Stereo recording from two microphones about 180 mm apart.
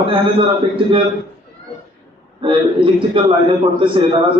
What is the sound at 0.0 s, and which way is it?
Speech, 30° right (ahead or behind).